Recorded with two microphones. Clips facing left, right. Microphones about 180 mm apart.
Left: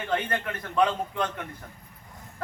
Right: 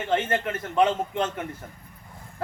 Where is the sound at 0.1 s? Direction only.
25° right (ahead or behind).